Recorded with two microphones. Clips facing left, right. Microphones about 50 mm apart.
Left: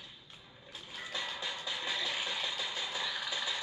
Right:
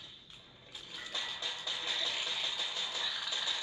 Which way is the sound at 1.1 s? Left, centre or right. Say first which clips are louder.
Left 2 dB; centre.